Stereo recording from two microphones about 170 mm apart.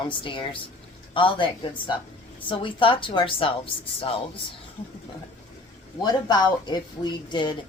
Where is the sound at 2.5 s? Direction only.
30° left (ahead or behind).